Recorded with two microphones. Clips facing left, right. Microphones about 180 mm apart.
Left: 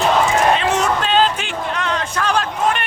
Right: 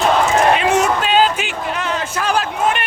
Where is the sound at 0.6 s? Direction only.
10° right (ahead or behind).